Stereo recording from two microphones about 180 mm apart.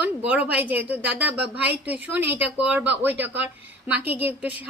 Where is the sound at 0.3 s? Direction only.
10° right (ahead or behind).